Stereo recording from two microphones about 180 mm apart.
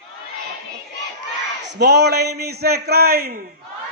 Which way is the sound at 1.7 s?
70° right (ahead or behind).